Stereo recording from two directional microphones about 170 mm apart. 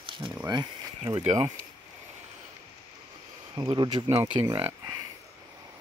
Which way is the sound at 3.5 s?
25° right (ahead or behind).